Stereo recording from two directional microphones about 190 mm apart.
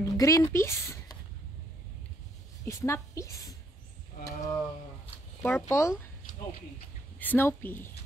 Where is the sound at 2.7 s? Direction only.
15° left (ahead or behind).